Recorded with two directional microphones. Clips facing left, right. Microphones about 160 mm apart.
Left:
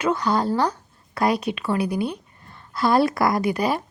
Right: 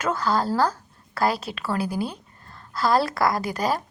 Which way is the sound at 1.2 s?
30° right (ahead or behind).